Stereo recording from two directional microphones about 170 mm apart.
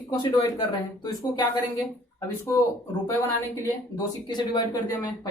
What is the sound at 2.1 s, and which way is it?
Speech, 15° left (ahead or behind).